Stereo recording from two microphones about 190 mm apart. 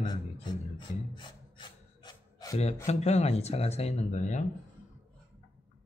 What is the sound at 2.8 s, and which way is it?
Speech, 35° left (ahead or behind).